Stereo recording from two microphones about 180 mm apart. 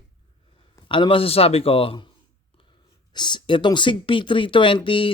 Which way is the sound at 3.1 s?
25° left (ahead or behind).